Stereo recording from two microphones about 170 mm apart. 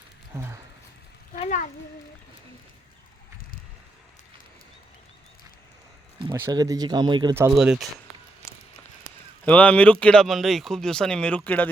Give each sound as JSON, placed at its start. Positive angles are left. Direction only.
{"t": 0.3, "sound": "speech", "side_deg": -15}
{"t": 1.3, "sound": "a child's voice", "side_deg": 50}
{"t": 6.3, "sound": "speech", "side_deg": -20}
{"t": 7.5, "sound": "speech", "side_deg": 0}
{"t": 9.4, "sound": "speech", "side_deg": 10}